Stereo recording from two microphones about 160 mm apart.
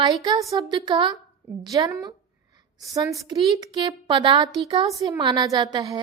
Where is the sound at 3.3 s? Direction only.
30° right (ahead or behind).